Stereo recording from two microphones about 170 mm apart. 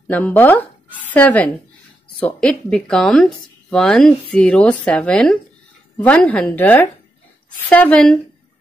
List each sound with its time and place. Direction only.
0.1 s a woman's voice: 10° left (ahead or behind)